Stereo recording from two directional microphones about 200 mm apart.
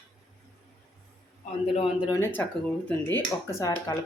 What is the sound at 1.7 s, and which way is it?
Speech, 30° left (ahead or behind).